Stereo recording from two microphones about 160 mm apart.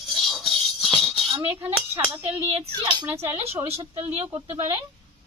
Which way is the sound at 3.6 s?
40° right (ahead or behind).